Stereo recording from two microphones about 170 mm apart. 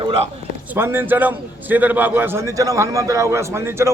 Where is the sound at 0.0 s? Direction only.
35° right (ahead or behind).